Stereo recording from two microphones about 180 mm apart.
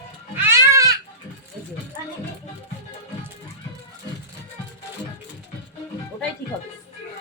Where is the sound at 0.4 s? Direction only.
15° right (ahead or behind).